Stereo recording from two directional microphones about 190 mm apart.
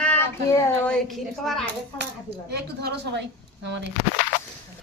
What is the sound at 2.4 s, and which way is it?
Speech, 60° right (ahead or behind).